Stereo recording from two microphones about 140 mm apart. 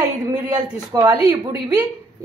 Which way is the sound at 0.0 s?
30° right (ahead or behind).